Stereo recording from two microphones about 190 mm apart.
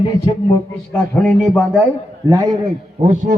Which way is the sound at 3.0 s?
40° right (ahead or behind).